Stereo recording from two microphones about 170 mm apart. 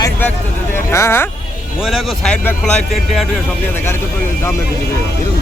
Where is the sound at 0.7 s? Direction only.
15° left (ahead or behind).